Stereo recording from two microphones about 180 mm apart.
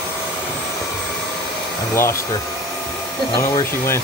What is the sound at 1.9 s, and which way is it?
Hair dryer, 15° left (ahead or behind).